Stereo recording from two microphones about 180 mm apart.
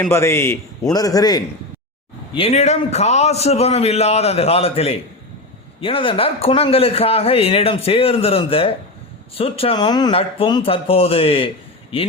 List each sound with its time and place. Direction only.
0.0 s a man's voice: 15° left (ahead or behind)
2.3 s a man's voice: 35° left (ahead or behind)